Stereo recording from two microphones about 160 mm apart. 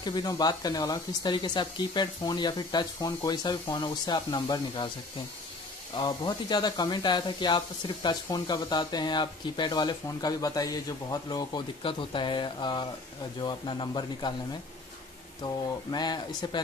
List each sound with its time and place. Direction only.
0.0 s speech: 25° left (ahead or behind)
5.9 s speech: 25° left (ahead or behind)
15.4 s speech: 25° left (ahead or behind)